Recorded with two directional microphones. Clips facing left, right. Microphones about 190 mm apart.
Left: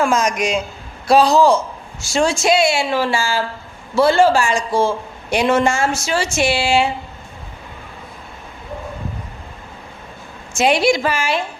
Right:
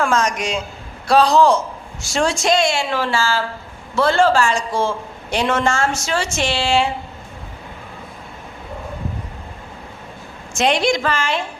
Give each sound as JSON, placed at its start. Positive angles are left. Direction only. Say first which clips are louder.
{"t": 0.0, "sound": "a woman's voice", "louder": "left 2 dB", "side_deg": 10}
{"t": 10.5, "sound": "a woman's voice", "louder": "left 2 dB", "side_deg": 5}